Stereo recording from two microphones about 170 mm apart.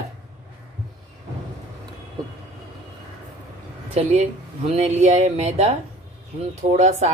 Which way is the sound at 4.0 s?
40° right (ahead or behind).